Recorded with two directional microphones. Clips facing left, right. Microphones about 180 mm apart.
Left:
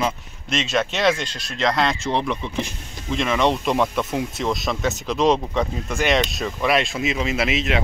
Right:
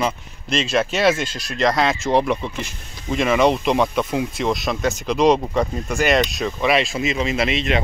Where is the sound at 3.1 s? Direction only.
5° right (ahead or behind).